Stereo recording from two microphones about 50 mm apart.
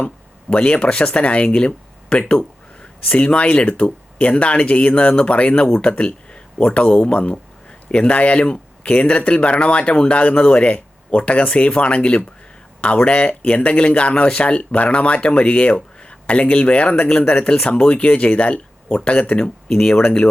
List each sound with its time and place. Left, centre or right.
0.5 s speech: left